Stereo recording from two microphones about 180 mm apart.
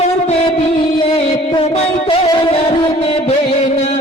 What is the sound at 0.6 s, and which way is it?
Music, 30° left (ahead or behind).